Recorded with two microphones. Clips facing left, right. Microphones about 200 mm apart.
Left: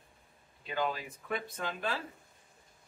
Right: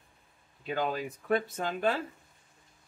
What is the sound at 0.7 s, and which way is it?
Speech, 45° right (ahead or behind).